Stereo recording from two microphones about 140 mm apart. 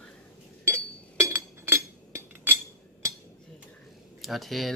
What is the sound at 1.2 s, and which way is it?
Chink, 20° right (ahead or behind).